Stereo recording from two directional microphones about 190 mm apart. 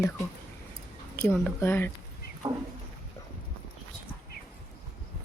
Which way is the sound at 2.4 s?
25° right (ahead or behind).